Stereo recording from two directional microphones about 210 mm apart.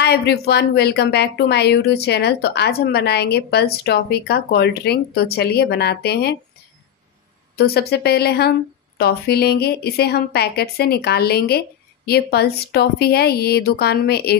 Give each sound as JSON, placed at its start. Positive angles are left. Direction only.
{"t": 0.0, "sound": "a woman's voice", "side_deg": 50}
{"t": 7.5, "sound": "a woman's voice", "side_deg": 50}